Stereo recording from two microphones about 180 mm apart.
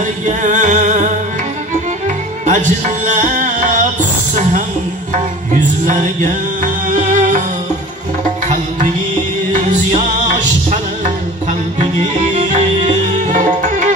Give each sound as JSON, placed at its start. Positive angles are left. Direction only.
{"t": 0.4, "sound": "music", "side_deg": -45}
{"t": 6.6, "sound": "music", "side_deg": -45}
{"t": 11.8, "sound": "music", "side_deg": -40}